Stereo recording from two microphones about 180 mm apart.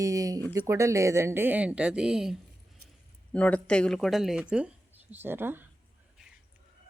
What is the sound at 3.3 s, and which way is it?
Speech, 5° left (ahead or behind).